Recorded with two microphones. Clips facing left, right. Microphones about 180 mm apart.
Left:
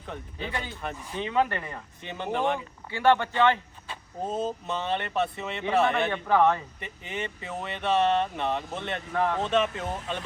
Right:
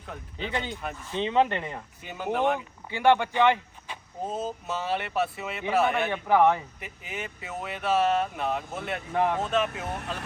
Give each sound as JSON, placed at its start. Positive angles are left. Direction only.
{"t": 0.3, "sound": "speech", "side_deg": -20}
{"t": 2.0, "sound": "speech", "side_deg": -5}
{"t": 4.2, "sound": "speech", "side_deg": 0}
{"t": 9.4, "sound": "speech", "side_deg": -5}